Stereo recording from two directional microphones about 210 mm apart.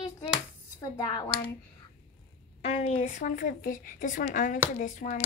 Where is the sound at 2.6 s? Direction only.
30° left (ahead or behind).